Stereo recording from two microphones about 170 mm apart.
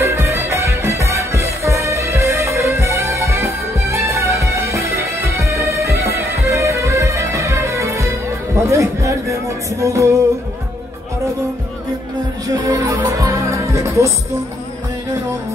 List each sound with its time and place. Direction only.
0.0 s music: 15° right (ahead or behind)
12.4 s music: 20° right (ahead or behind)